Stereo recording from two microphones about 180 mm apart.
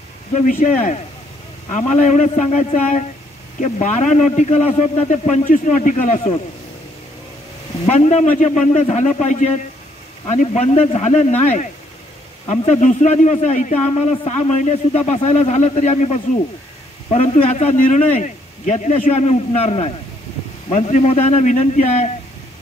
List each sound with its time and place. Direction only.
0.5 s a man's voice: 45° left (ahead or behind)
7.8 s a man's voice: 40° left (ahead or behind)
12.4 s a man's voice: 40° left (ahead or behind)